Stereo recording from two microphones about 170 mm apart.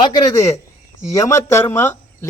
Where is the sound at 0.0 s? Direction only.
25° left (ahead or behind).